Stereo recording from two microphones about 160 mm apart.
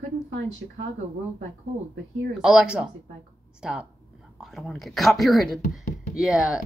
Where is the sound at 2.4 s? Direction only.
5° right (ahead or behind).